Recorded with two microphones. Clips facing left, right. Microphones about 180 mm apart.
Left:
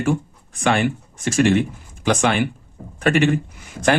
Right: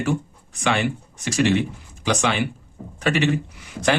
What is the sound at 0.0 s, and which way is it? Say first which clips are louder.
Speech: left 3 dB; 50° left (ahead or behind).